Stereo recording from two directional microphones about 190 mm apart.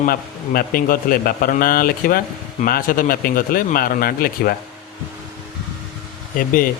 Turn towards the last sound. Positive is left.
turn(degrees=45)  # may be behind; listen again after turning